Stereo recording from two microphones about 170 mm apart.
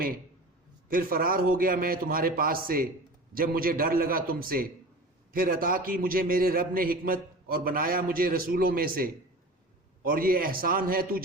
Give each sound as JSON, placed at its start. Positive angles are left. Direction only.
{"t": 0.9, "sound": "a man's voice", "side_deg": -60}